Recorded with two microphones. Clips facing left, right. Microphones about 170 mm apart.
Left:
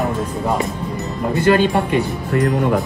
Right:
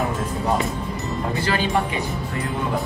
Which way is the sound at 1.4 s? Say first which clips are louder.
Left 9 dB; 55° left (ahead or behind).